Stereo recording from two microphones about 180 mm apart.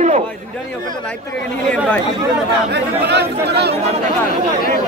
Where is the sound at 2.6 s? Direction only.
75° right (ahead or behind).